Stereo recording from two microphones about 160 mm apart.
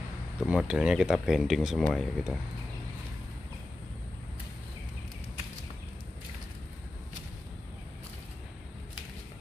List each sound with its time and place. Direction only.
0.4 s speech: 5° right (ahead or behind)